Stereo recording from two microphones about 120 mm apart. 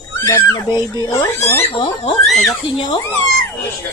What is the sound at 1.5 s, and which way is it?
Speech, 55° left (ahead or behind).